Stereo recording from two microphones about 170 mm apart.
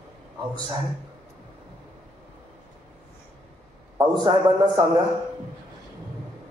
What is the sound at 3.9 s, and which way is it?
Speech, 25° right (ahead or behind).